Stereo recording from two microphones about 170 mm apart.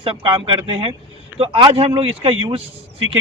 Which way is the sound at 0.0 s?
30° right (ahead or behind).